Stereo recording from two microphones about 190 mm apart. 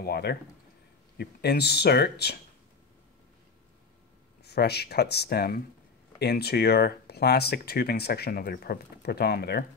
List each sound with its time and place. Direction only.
0.0 s speech: 55° left (ahead or behind)
4.5 s speech: 60° left (ahead or behind)